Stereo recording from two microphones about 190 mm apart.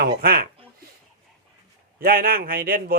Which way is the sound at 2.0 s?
50° right (ahead or behind).